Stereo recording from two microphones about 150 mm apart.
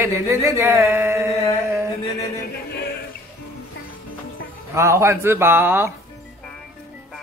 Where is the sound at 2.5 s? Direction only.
90° left.